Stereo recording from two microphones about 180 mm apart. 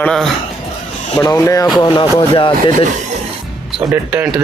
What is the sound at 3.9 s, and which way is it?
Speech, 10° right (ahead or behind).